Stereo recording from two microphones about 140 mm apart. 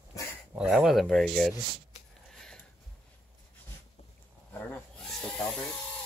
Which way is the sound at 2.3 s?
5° left (ahead or behind).